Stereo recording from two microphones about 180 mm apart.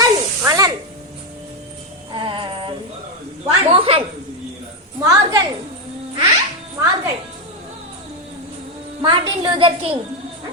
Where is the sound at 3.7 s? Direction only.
30° right (ahead or behind).